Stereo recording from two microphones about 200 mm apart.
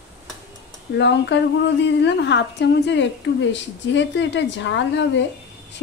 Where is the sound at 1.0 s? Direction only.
60° left (ahead or behind).